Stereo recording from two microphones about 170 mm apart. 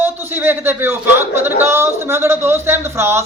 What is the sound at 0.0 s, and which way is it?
Speech, 10° right (ahead or behind).